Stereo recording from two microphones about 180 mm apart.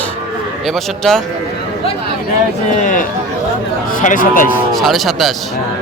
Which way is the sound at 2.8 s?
45° left (ahead or behind).